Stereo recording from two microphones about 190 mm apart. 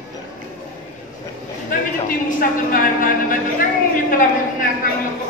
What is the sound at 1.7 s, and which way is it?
A woman's voice, 45° left (ahead or behind).